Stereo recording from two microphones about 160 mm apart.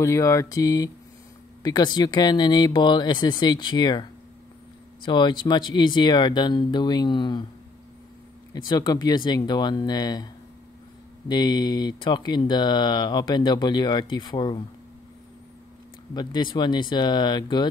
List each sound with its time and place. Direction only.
0.0 s speech: 20° left (ahead or behind)
8.5 s speech: 25° left (ahead or behind)
11.2 s speech: 25° left (ahead or behind)
16.1 s speech: 25° left (ahead or behind)